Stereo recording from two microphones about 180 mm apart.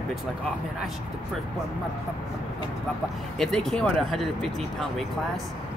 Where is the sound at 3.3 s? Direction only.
5° left (ahead or behind).